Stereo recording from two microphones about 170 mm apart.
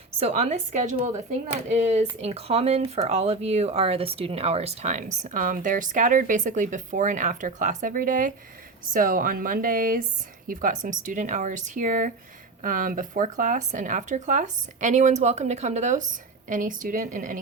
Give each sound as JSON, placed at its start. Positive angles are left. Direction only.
{"t": 0.2, "sound": "a woman's voice", "side_deg": -40}